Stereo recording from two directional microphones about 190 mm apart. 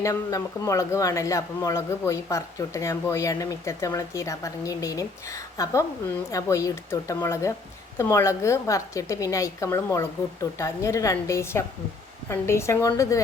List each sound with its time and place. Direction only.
0.0 s speech: 15° left (ahead or behind)